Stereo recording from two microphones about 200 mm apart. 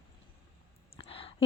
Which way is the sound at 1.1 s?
30° left (ahead or behind).